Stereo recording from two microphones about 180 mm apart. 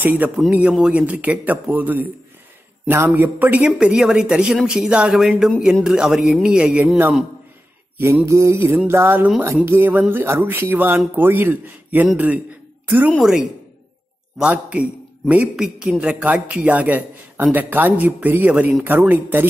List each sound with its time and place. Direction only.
0.0 s a man's voice: 10° right (ahead or behind)